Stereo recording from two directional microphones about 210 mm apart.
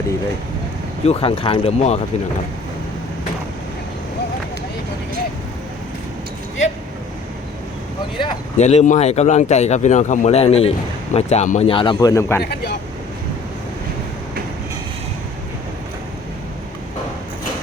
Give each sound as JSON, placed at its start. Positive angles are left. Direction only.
{"t": 1.0, "sound": "speech", "side_deg": 30}
{"t": 8.2, "sound": "speech", "side_deg": 30}
{"t": 12.4, "sound": "speech", "side_deg": 50}